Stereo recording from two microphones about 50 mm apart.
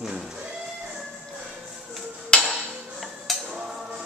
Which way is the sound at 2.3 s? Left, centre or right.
Left.